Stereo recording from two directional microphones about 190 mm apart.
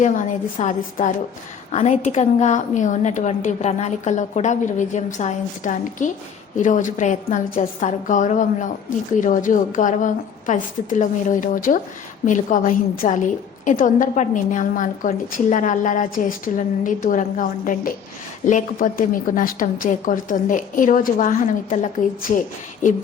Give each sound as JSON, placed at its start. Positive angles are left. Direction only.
{"t": 0.0, "sound": "a woman's voice", "side_deg": 40}